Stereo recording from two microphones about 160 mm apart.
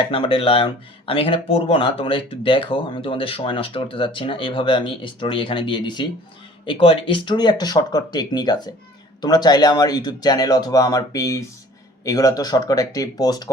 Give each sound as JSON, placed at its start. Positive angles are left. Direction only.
{"t": 0.1, "sound": "speech", "side_deg": 35}